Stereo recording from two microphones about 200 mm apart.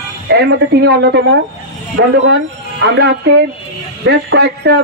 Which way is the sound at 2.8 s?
55° right (ahead or behind).